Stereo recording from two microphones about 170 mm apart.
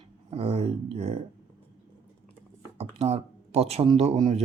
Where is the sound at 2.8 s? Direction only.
35° right (ahead or behind).